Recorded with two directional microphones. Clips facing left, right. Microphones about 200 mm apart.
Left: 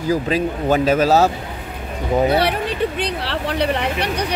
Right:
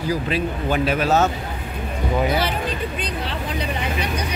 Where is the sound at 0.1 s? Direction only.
45° left (ahead or behind).